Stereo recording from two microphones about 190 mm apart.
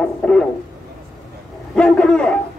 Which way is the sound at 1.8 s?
5° left (ahead or behind).